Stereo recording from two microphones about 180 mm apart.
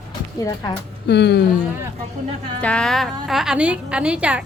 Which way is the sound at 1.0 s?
70° left (ahead or behind).